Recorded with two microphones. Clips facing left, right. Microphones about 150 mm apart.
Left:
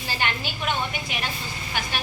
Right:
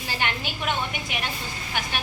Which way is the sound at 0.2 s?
15° right (ahead or behind).